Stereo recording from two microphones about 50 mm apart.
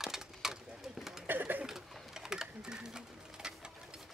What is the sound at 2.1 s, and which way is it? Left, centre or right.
Sewing machine, centre.